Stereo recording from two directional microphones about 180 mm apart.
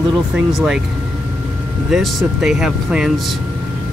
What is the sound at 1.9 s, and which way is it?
Speech, centre (ahead or behind).